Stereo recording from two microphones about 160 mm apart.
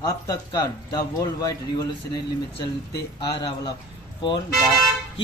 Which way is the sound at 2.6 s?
90° left.